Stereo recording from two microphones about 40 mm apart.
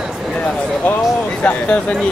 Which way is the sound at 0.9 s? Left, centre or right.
Left.